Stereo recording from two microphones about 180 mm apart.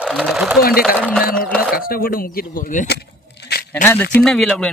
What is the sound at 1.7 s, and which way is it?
Speech, 55° left (ahead or behind).